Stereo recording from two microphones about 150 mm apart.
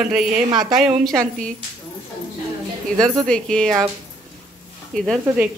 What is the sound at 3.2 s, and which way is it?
Speech, 5° left (ahead or behind).